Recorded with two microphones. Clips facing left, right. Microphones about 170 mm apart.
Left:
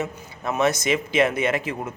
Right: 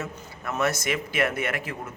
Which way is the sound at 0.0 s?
20° left (ahead or behind).